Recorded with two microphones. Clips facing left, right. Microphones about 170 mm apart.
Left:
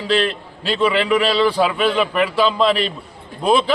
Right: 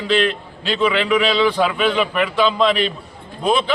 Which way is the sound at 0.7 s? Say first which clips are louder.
Left 1 dB; centre (ahead or behind).